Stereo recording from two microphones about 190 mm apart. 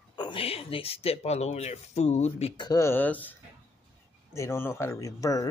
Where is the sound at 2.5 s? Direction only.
20° left (ahead or behind).